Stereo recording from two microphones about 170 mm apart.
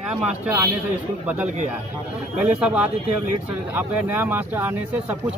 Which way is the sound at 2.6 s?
5° right (ahead or behind).